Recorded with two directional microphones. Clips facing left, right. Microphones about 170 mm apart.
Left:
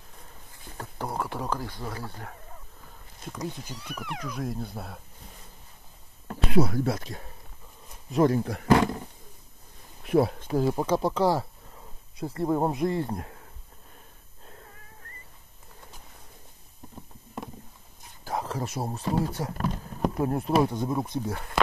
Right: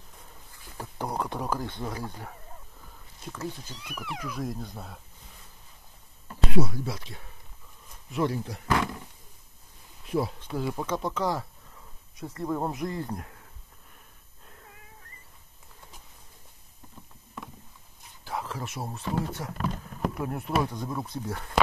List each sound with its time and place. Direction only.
0.7 s a sound: 15° right (ahead or behind)
1.7 s speech: 20° right (ahead or behind)
3.8 s speech: 5° right (ahead or behind)
6.2 s speech: 60° left (ahead or behind)
8.6 s speech: 35° left (ahead or behind)
10.0 s speech: 60° left (ahead or behind)
10.5 s speech: 35° left (ahead or behind)
18.2 s a sound: 40° left (ahead or behind)
19.3 s speech: 35° left (ahead or behind); by 21.4 s 20° left (ahead or behind)